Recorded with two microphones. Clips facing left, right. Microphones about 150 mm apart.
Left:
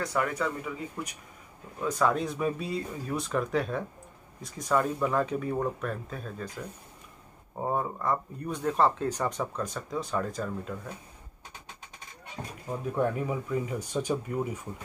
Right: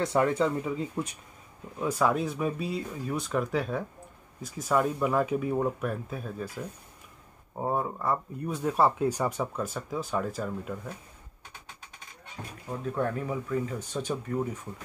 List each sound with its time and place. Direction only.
0.0 s speech: 25° right (ahead or behind)
1.8 s speech: 10° right (ahead or behind)
7.6 s speech: centre (ahead or behind)
12.6 s speech: 10° left (ahead or behind)